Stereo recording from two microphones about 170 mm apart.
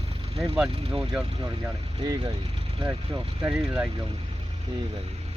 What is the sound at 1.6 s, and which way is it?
Speech, 20° right (ahead or behind).